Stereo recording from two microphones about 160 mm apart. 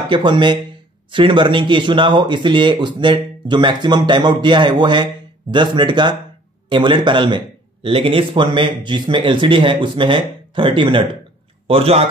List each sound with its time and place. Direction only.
0.1 s a man's voice: 30° right (ahead or behind)